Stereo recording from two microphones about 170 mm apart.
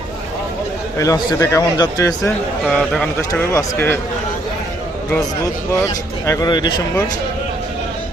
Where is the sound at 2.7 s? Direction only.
5° left (ahead or behind).